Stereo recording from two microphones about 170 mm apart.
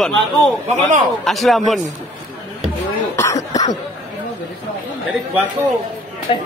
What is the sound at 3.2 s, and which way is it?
Cough, 20° left (ahead or behind).